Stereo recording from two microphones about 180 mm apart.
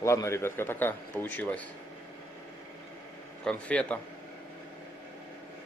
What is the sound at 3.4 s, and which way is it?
Speech, 5° left (ahead or behind).